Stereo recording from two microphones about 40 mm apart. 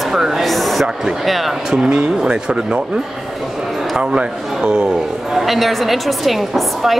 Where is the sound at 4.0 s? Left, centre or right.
Right.